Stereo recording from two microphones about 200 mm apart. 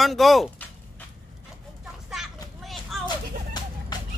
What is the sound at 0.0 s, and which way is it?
Speech, centre (ahead or behind).